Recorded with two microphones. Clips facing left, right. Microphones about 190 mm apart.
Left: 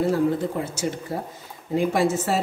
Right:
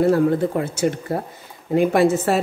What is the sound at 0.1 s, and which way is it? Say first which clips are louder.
A woman's voice: right 5 dB; 60° right (ahead or behind).